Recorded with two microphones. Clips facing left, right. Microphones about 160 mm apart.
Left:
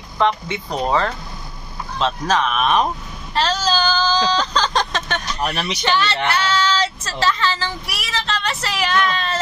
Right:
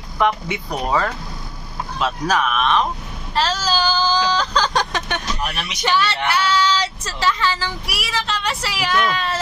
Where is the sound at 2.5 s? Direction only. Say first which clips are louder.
Left 1 dB; 10° left (ahead or behind).